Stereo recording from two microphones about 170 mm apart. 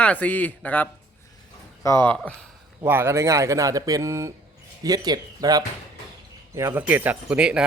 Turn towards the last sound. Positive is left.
turn(degrees=-5)  # may be behind; listen again after turning